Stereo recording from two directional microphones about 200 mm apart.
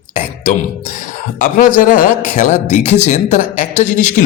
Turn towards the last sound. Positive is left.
turn(degrees=35)  # may be behind; listen again after turning